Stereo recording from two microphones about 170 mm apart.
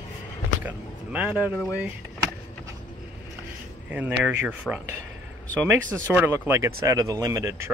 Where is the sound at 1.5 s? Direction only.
15° left (ahead or behind).